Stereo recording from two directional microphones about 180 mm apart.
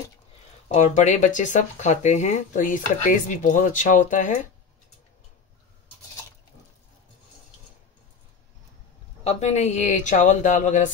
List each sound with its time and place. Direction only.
0.7 s speech: 40° left (ahead or behind)
9.2 s speech: 35° left (ahead or behind)